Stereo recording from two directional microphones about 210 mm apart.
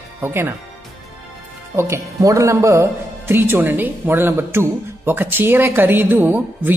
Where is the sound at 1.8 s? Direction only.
15° right (ahead or behind).